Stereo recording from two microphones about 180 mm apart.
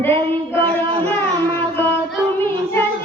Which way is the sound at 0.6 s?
30° right (ahead or behind).